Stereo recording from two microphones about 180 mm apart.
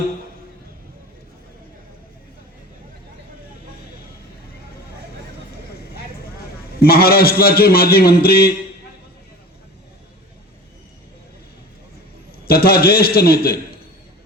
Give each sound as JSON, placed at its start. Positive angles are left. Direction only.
{"t": 6.8, "sound": "a man's voice", "side_deg": 60}
{"t": 12.5, "sound": "a man's voice", "side_deg": 60}